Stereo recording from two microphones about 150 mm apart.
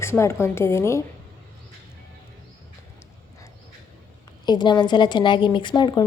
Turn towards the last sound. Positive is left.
turn(degrees=30)  # may be behind; listen again after turning